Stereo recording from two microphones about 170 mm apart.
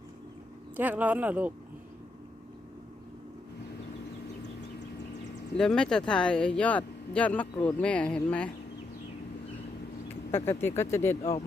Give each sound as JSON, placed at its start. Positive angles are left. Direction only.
{"t": 0.8, "sound": "speech", "side_deg": -10}
{"t": 5.5, "sound": "speech", "side_deg": 5}
{"t": 10.3, "sound": "speech", "side_deg": 15}
{"t": 11.2, "sound": "speech", "side_deg": 35}